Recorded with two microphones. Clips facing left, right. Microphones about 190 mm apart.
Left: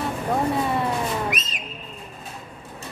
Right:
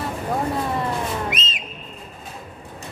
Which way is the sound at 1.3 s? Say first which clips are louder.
Right 1 dB; 25° right (ahead or behind).